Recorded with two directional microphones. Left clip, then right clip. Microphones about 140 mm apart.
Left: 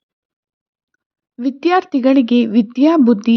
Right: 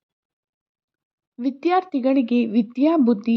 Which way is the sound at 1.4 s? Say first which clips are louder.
Left 5 dB; 15° left (ahead or behind).